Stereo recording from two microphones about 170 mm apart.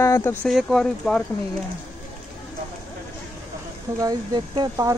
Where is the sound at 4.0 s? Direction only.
25° right (ahead or behind).